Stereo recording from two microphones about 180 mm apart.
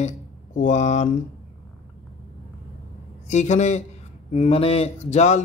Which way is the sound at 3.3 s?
40° left (ahead or behind).